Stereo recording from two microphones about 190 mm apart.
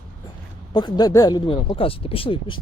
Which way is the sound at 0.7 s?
20° left (ahead or behind).